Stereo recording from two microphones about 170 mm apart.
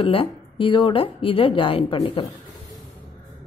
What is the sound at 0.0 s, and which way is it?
A woman's voice, 30° left (ahead or behind).